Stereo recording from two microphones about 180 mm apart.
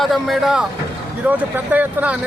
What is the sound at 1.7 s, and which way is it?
Speech, 10° right (ahead or behind).